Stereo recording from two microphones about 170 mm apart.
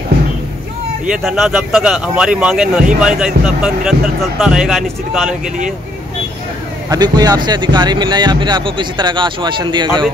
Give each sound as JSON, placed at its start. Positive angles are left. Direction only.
{"t": 1.1, "sound": "speech", "side_deg": -5}
{"t": 6.9, "sound": "speech", "side_deg": -25}